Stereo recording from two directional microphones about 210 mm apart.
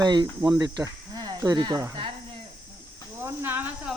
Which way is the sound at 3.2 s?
10° right (ahead or behind).